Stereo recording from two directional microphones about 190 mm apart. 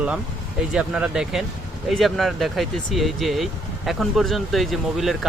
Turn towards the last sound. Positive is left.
turn(degrees=0)  # may be behind; listen again after turning